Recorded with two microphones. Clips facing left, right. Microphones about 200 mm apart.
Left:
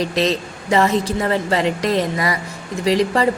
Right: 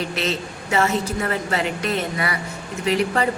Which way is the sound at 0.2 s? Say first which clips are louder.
Left 6 dB; 35° left (ahead or behind).